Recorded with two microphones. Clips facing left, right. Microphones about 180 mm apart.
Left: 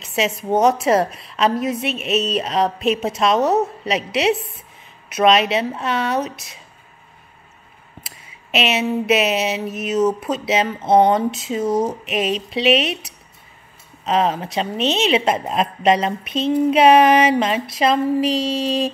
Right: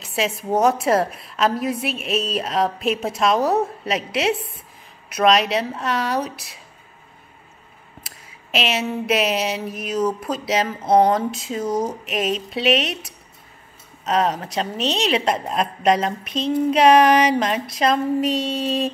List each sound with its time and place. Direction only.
0.0 s a woman's voice: centre (ahead or behind)
8.5 s a woman's voice: 5° left (ahead or behind)
11.6 s speech: 25° left (ahead or behind)
12.1 s a woman's voice: centre (ahead or behind)
14.0 s a woman's voice: centre (ahead or behind)